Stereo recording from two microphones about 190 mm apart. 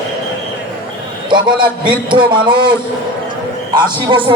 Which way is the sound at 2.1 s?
25° right (ahead or behind).